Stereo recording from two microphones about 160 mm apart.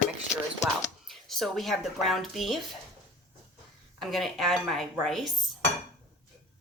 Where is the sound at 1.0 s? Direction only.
Centre (ahead or behind).